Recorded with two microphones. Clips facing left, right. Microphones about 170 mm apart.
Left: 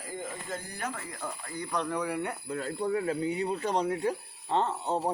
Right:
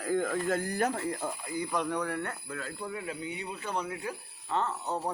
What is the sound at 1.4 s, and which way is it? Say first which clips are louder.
Speech: even; 10° right (ahead or behind).